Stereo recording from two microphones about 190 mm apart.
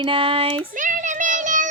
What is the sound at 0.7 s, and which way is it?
Child singing, 40° right (ahead or behind).